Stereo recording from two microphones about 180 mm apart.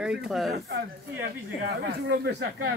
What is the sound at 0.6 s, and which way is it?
Speech, 70° right (ahead or behind).